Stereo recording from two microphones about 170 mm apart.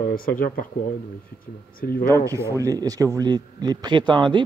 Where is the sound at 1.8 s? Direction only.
60° left (ahead or behind).